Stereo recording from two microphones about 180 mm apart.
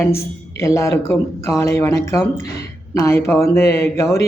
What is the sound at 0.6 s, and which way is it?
Speech, 15° left (ahead or behind).